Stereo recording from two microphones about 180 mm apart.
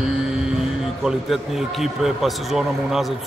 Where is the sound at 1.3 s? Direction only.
Centre (ahead or behind).